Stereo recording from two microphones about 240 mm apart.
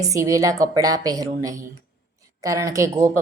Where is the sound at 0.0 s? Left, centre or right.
Centre.